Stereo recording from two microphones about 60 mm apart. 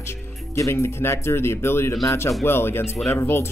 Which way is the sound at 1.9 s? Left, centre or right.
Left.